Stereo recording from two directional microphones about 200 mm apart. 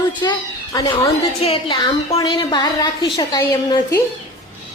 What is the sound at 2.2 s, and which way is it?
A woman's voice, 20° left (ahead or behind).